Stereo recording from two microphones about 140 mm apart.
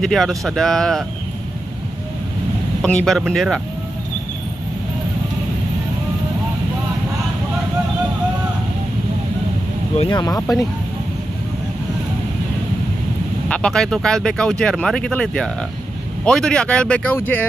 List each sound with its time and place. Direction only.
0.0 s speech: centre (ahead or behind)
2.8 s speech: 5° left (ahead or behind)
10.0 s speech: 25° left (ahead or behind)
13.5 s speech: 5° left (ahead or behind)